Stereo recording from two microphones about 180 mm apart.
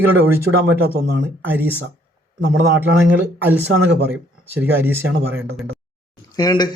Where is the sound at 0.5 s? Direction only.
65° right (ahead or behind).